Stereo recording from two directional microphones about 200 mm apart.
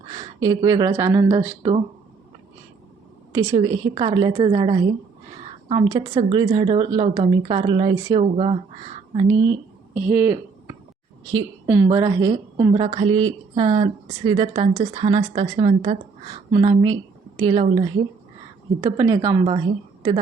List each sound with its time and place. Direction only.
0.1 s speech: 20° right (ahead or behind)
3.6 s speech: 20° right (ahead or behind)
8.2 s speech: 30° right (ahead or behind)
9.9 s speech: 10° right (ahead or behind)
12.7 s a woman's voice: 25° right (ahead or behind)